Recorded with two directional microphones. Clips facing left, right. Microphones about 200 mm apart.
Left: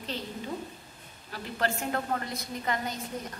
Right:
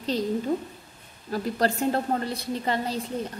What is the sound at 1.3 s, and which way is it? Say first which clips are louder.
A woman's voice: right 7 dB; 35° right (ahead or behind).